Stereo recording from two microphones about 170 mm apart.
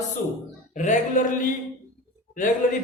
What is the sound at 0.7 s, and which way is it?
Speech, 45° left (ahead or behind).